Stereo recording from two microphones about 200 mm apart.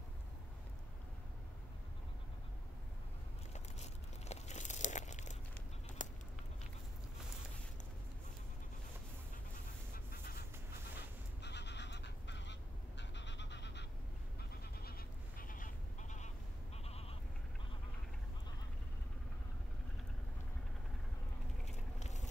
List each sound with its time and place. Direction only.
3.5 s crumpling: 35° left (ahead or behind)
6.0 s a sound: 40° left (ahead or behind)
11.4 s goose: 60° left (ahead or behind)
14.8 s sheep: 50° left (ahead or behind); by 17.2 s 30° left (ahead or behind)
21.6 s vehicle: 35° left (ahead or behind)